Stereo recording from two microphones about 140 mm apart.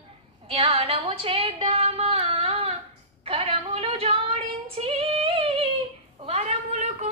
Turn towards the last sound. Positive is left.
turn(degrees=-55)  # may be behind; listen again after turning